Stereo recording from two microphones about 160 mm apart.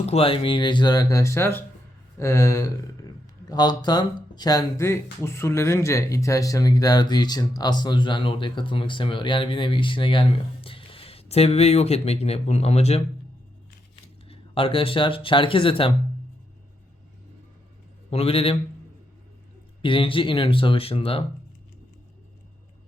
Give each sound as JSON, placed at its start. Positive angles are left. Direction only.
{"t": 0.0, "sound": "speech", "side_deg": 40}
{"t": 14.3, "sound": "speech", "side_deg": 35}
{"t": 18.1, "sound": "speech", "side_deg": 40}
{"t": 19.8, "sound": "speech", "side_deg": 30}